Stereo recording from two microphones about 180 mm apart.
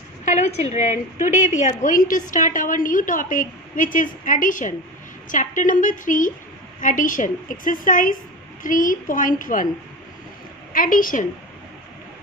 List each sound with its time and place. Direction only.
0.2 s a woman's voice: 40° left (ahead or behind)
10.7 s a woman's voice: 50° left (ahead or behind)